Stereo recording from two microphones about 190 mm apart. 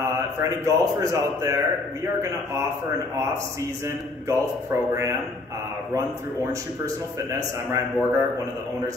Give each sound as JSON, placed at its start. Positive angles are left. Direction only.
{"t": 0.0, "sound": "a man's voice", "side_deg": -15}
{"t": 3.8, "sound": "a man's voice", "side_deg": -15}
{"t": 7.2, "sound": "a man's voice", "side_deg": -15}